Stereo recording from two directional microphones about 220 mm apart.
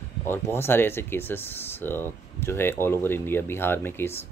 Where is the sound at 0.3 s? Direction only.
10° left (ahead or behind).